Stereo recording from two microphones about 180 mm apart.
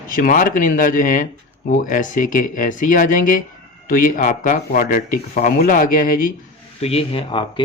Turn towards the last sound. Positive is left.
turn(degrees=30)  # may be behind; listen again after turning